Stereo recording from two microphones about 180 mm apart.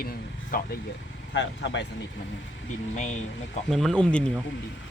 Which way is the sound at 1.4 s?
80° left.